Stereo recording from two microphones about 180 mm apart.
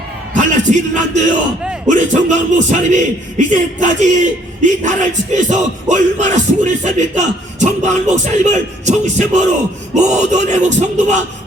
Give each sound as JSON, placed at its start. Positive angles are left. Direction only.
{"t": 0.3, "sound": "music", "side_deg": -45}
{"t": 1.9, "sound": "a man's voice", "side_deg": -45}